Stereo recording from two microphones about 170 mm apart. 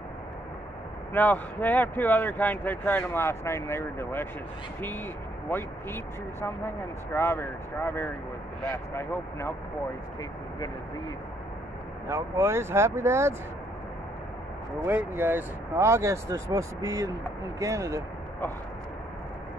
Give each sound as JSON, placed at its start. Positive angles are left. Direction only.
{"t": 1.1, "sound": "speech", "side_deg": 10}
{"t": 5.5, "sound": "speech", "side_deg": 10}
{"t": 12.1, "sound": "speech", "side_deg": -15}
{"t": 14.9, "sound": "speech", "side_deg": -10}